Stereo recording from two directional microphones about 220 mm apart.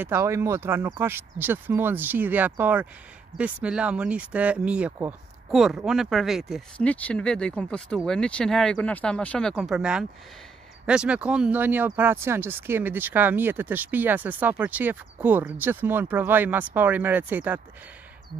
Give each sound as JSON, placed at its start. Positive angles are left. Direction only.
{"t": 0.0, "sound": "speech", "side_deg": -10}